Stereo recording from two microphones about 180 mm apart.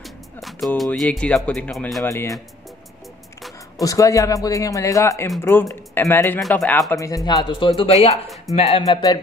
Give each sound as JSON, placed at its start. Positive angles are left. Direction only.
{"t": 0.4, "sound": "music", "side_deg": 0}
{"t": 0.7, "sound": "speech", "side_deg": 0}
{"t": 2.0, "sound": "speech", "side_deg": 15}
{"t": 3.8, "sound": "speech", "side_deg": 20}
{"t": 7.2, "sound": "speech", "side_deg": 25}
{"t": 8.8, "sound": "speech", "side_deg": 20}